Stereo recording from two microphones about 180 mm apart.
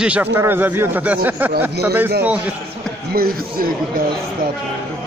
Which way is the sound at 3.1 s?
55° right (ahead or behind).